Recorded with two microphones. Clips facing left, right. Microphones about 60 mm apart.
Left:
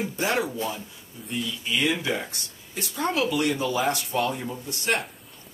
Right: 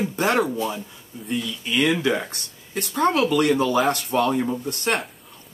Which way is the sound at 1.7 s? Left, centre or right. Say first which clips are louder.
Right 5 dB; right.